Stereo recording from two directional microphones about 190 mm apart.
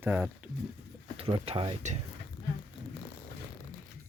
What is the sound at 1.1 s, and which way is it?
Speech, 30° right (ahead or behind).